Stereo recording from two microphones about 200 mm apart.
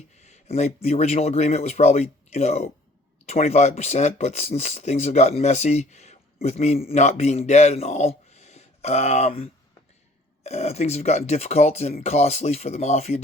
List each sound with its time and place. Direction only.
0.1 s speech: 35° left (ahead or behind)